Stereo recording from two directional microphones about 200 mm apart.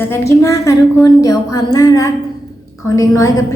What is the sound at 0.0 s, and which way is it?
A woman's voice, 15° left (ahead or behind).